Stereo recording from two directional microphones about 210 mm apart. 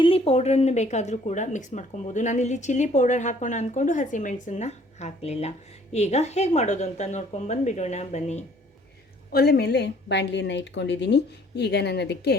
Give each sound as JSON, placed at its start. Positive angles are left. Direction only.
{"t": 0.0, "sound": "speech", "side_deg": 30}
{"t": 9.3, "sound": "a woman's voice", "side_deg": 50}